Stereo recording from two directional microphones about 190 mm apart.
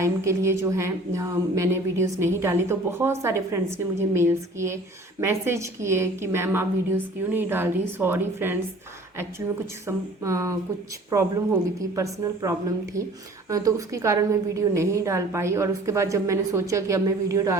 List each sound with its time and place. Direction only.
0.0 s a woman's voice: 15° right (ahead or behind)
9.8 s a woman's voice: 15° right (ahead or behind)
11.9 s a woman's voice: 15° right (ahead or behind)